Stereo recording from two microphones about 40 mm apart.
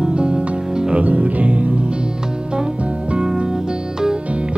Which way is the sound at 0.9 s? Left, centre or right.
Right.